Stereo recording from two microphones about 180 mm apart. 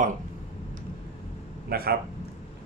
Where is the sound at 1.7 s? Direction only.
60° right (ahead or behind).